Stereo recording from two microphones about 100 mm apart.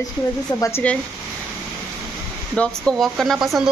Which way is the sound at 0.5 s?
30° left (ahead or behind).